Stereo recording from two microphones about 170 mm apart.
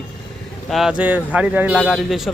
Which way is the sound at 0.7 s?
Centre (ahead or behind).